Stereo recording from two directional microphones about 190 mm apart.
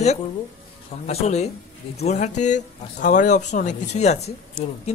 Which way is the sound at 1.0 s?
35° left (ahead or behind).